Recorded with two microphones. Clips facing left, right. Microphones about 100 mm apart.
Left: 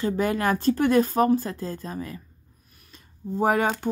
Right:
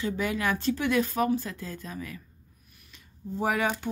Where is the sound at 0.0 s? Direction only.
45° left (ahead or behind).